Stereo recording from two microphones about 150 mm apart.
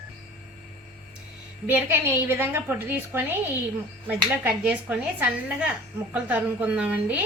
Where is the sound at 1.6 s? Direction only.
15° right (ahead or behind).